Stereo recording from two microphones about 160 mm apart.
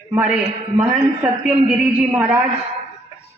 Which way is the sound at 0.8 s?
5° right (ahead or behind).